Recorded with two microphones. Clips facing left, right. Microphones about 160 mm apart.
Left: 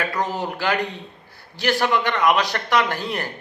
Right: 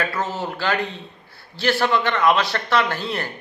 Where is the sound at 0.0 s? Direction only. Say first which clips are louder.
Left 1 dB; 15° left (ahead or behind).